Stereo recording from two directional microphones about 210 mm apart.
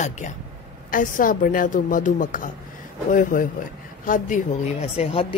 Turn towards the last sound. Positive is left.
turn(degrees=30)  # may be behind; listen again after turning